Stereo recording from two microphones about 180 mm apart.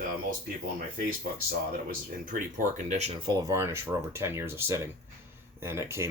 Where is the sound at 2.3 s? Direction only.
50° right (ahead or behind).